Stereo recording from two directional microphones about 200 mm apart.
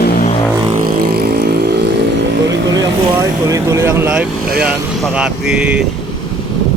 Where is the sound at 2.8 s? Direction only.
15° right (ahead or behind).